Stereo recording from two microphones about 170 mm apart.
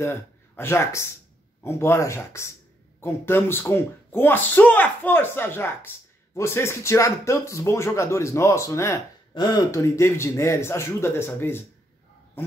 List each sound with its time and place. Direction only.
0.0 s speech: 15° left (ahead or behind)